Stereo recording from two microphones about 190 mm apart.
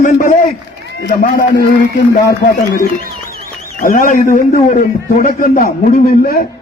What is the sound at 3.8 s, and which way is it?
A man's voice, 45° left (ahead or behind).